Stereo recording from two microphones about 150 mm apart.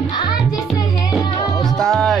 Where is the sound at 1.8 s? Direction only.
5° left (ahead or behind).